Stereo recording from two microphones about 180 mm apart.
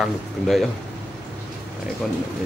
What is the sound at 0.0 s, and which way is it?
Speech, centre (ahead or behind).